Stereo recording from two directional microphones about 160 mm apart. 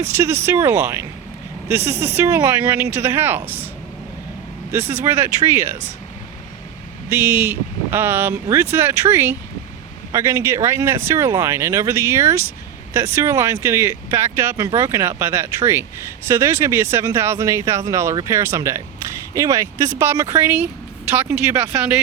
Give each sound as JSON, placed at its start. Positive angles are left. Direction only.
{"t": 0.2, "sound": "speech", "side_deg": -15}
{"t": 4.7, "sound": "speech", "side_deg": -15}
{"t": 7.1, "sound": "speech", "side_deg": -15}